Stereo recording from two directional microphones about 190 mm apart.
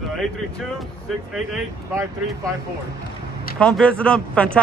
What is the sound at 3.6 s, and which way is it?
Speech, 5° left (ahead or behind).